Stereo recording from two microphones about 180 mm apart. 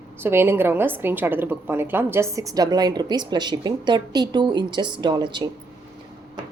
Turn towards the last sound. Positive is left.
turn(degrees=-25)  # may be behind; listen again after turning